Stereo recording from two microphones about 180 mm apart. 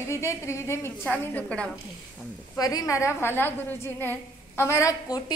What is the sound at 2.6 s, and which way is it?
A woman's voice, 20° left (ahead or behind).